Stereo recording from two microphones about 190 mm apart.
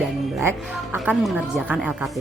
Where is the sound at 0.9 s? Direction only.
5° right (ahead or behind).